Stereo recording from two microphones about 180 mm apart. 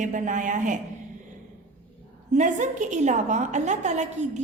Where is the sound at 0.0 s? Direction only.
45° right (ahead or behind).